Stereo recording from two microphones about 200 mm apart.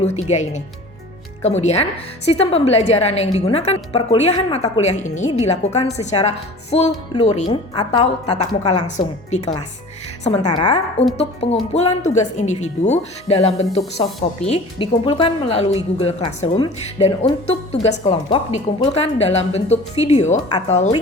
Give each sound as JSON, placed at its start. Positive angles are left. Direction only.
{"t": 0.0, "sound": "a woman's voice", "side_deg": 35}